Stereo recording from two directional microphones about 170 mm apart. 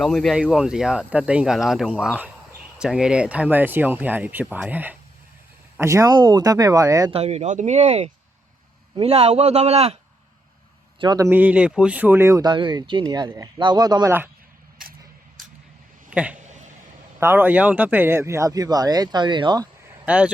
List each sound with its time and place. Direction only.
0.0 s speech: 5° left (ahead or behind); by 7.1 s 20° right (ahead or behind)
7.1 s a man's voice: 40° right (ahead or behind)
11.0 s speech: 25° right (ahead or behind)
11.3 s speech: 10° right (ahead or behind)
16.0 s a sound: 5° right (ahead or behind)
17.2 s speech: 15° right (ahead or behind)
20.1 s speech: 5° right (ahead or behind)